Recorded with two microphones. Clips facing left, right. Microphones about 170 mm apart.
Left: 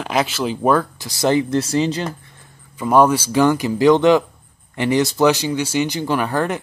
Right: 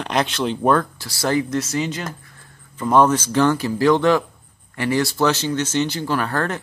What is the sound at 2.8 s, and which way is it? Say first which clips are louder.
Speech: left 2 dB; 10° left (ahead or behind).